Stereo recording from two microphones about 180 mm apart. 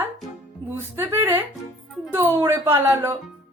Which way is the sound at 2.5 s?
15° right (ahead or behind).